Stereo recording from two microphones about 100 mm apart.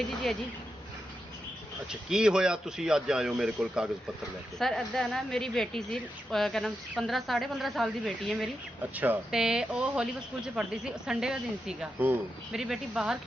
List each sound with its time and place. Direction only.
1.9 s speech: 5° right (ahead or behind)
4.5 s a woman's voice: 5° left (ahead or behind)
8.8 s speech: 15° right (ahead or behind)
9.3 s speech: 5° right (ahead or behind)
11.9 s speech: 20° right (ahead or behind)
12.5 s speech: 5° right (ahead or behind)